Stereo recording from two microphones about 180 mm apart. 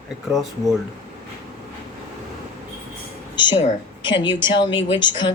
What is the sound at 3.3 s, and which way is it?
Speech, 25° left (ahead or behind).